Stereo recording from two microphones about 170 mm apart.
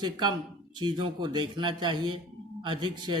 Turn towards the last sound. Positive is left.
turn(degrees=-25)  # may be behind; listen again after turning